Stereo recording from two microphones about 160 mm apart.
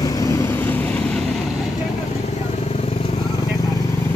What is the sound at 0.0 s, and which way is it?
Vehicle, 20° left (ahead or behind).